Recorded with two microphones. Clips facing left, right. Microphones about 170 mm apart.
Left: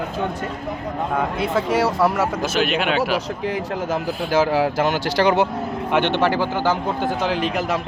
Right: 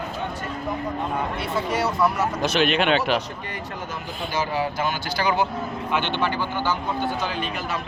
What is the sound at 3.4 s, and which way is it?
Speech, 90° left.